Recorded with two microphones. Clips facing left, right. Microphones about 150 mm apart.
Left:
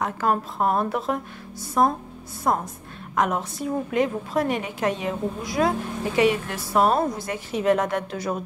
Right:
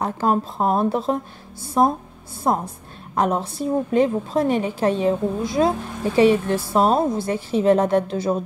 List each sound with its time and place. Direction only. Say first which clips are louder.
0.0 s a woman's voice: right 3 dB; 30° right (ahead or behind)